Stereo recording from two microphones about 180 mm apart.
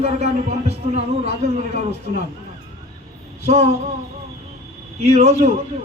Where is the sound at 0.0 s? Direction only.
35° right (ahead or behind).